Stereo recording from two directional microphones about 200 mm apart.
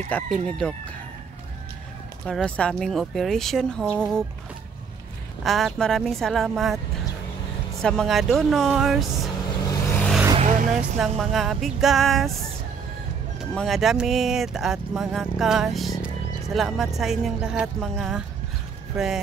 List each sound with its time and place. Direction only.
0.1 s speech: 5° left (ahead or behind)
2.2 s speech: 5° left (ahead or behind)
5.4 s speech: centre (ahead or behind)
7.8 s speech: 5° left (ahead or behind)
9.6 s vehicle: 15° left (ahead or behind)
9.9 s vehicle: 5° left (ahead or behind)
10.3 s vehicle: 35° right (ahead or behind)
10.8 s speech: centre (ahead or behind)
13.4 s speech: centre (ahead or behind)